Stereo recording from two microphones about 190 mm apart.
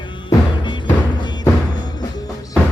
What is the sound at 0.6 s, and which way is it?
Music, 25° left (ahead or behind).